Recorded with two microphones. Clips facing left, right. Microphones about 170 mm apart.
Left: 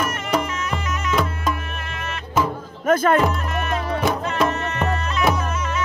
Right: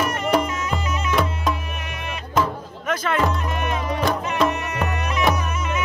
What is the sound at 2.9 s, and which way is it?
Music, 50° left (ahead or behind).